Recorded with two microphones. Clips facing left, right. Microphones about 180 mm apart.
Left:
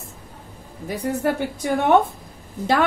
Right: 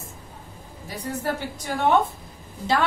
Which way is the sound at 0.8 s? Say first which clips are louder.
Left 6 dB; 55° left (ahead or behind).